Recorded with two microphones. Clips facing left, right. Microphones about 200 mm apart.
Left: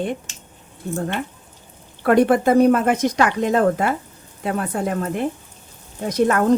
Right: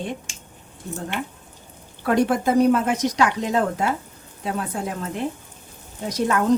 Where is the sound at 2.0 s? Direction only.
60° left (ahead or behind).